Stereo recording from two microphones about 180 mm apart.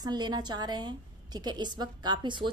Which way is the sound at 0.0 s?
25° right (ahead or behind).